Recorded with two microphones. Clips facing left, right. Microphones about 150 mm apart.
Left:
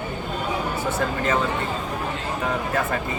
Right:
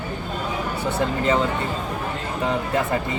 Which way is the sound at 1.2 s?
15° right (ahead or behind).